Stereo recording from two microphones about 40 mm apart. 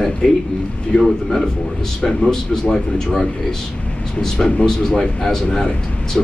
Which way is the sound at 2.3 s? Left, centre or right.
Centre.